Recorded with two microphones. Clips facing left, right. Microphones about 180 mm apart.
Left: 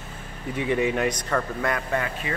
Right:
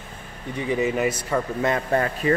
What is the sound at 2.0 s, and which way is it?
Speech, 40° right (ahead or behind).